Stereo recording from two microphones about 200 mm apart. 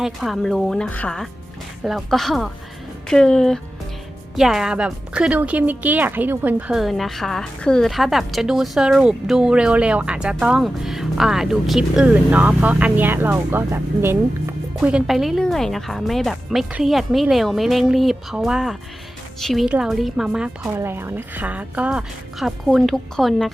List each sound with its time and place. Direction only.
0.0 s a woman's voice: centre (ahead or behind)